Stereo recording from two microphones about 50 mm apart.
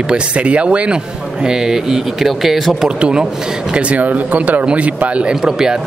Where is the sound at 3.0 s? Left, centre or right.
Centre.